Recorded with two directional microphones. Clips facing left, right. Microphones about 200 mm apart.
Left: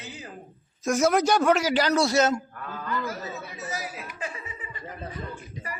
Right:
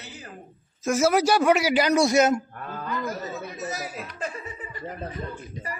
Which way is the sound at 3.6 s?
40° right (ahead or behind).